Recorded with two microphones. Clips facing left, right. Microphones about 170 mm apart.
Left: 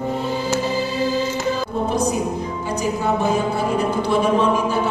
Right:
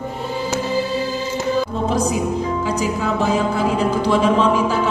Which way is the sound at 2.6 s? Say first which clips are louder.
Right 1 dB; 90° right.